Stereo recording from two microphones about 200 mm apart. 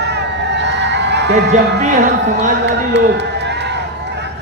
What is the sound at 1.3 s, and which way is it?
Speech, 35° right (ahead or behind).